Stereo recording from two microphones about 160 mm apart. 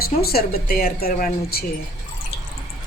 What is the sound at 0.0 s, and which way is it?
A woman's voice, 75° left (ahead or behind).